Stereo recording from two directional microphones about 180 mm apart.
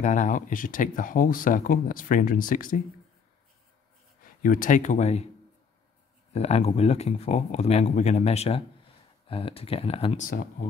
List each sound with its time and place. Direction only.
0.0 s speech: 45° left (ahead or behind)
4.4 s speech: 50° left (ahead or behind)
6.3 s speech: 35° left (ahead or behind)